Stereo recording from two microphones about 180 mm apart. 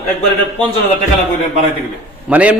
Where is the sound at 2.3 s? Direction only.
10° right (ahead or behind).